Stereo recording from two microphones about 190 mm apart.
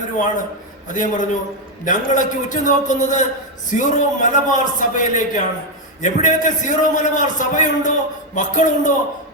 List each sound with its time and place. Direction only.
0.9 s a man's voice: 40° left (ahead or behind)